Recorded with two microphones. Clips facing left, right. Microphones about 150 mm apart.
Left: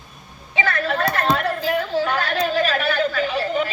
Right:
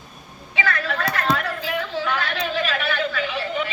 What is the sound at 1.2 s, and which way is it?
Chatter, 30° left (ahead or behind).